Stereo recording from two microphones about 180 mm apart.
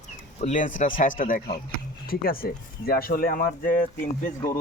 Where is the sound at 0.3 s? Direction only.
45° left (ahead or behind).